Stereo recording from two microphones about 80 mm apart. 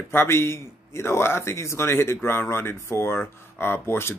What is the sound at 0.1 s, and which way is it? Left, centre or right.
Speech, left.